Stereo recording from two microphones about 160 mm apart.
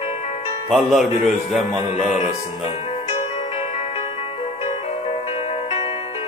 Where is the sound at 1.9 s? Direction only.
45° left (ahead or behind).